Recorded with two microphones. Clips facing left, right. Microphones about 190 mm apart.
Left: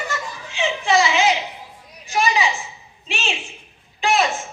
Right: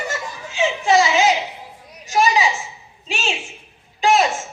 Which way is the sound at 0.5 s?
40° right (ahead or behind).